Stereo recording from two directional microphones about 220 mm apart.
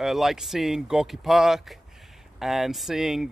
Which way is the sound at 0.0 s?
Centre (ahead or behind).